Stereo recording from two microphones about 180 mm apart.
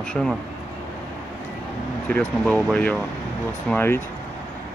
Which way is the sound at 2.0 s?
5° left (ahead or behind).